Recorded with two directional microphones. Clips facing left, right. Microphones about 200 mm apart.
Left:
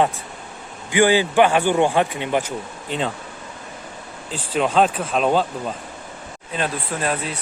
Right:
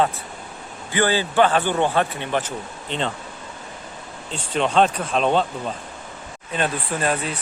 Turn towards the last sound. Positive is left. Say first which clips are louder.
# right 1 dB
turn(degrees=0)  # may be behind; listen again after turning